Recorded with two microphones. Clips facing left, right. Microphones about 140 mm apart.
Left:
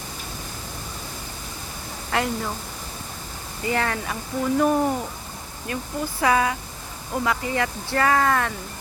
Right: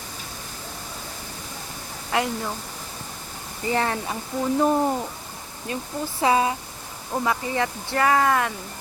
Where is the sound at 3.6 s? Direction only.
20° right (ahead or behind).